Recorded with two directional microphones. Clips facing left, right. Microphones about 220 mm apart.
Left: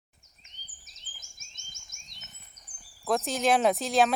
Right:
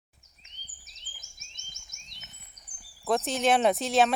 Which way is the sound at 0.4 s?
45° left (ahead or behind).